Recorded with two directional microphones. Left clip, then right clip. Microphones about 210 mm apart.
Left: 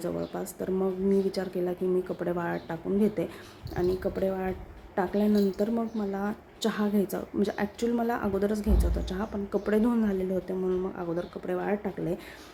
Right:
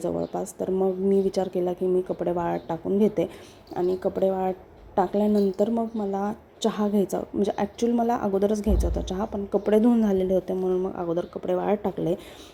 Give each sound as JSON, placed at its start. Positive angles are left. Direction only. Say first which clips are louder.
{"t": 0.3, "sound": "speech", "louder": "right 5 dB", "side_deg": 0}
{"t": 1.3, "sound": "a woman's voice", "louder": "right 5 dB", "side_deg": -20}